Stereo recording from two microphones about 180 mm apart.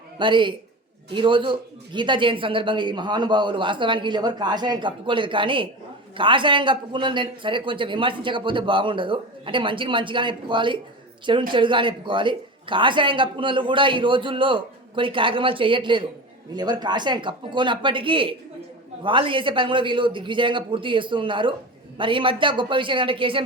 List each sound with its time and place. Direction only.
0.2 s speech: 25° right (ahead or behind)